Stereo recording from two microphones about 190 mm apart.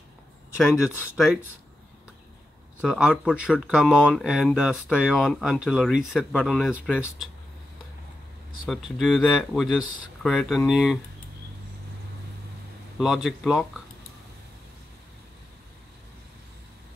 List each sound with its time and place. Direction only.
0.6 s speech: 5° right (ahead or behind)
2.8 s speech: 5° right (ahead or behind)
8.6 s speech: centre (ahead or behind)
13.0 s speech: centre (ahead or behind)